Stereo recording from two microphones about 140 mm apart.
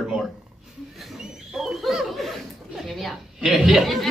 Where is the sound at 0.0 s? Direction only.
5° right (ahead or behind).